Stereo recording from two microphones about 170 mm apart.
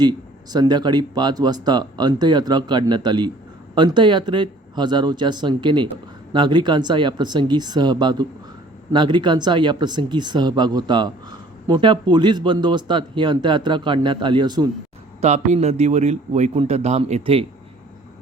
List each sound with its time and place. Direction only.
0.5 s speech: 25° right (ahead or behind)
15.2 s a man's voice: 40° right (ahead or behind)